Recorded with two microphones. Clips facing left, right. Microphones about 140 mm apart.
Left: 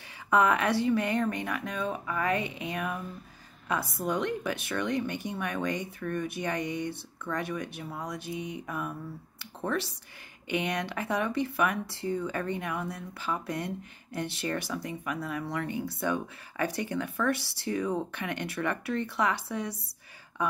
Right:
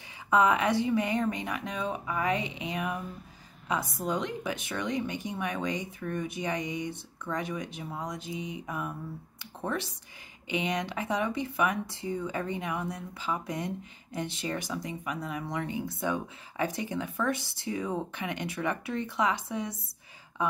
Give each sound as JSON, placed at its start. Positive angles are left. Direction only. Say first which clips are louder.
{"t": 0.3, "sound": "speech", "louder": "even", "side_deg": -15}